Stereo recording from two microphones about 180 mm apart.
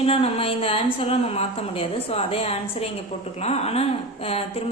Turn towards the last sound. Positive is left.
turn(degrees=35)  # may be behind; listen again after turning